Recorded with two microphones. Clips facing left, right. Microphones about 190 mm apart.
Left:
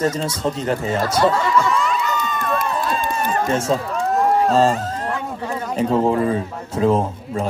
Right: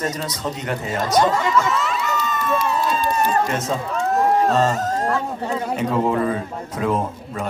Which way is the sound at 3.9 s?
Centre (ahead or behind).